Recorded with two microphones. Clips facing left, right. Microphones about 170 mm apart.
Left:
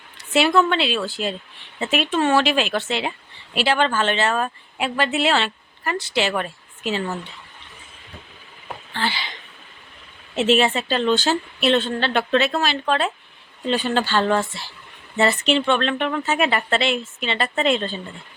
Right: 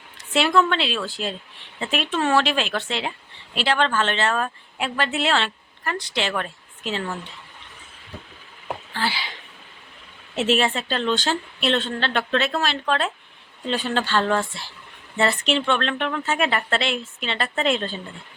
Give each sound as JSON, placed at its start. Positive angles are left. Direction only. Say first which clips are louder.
{"t": 0.2, "sound": "speech", "louder": "left 2 dB", "side_deg": 5}
{"t": 8.9, "sound": "speech", "louder": "left 2 dB", "side_deg": -5}
{"t": 10.3, "sound": "speech", "louder": "left 3 dB", "side_deg": 0}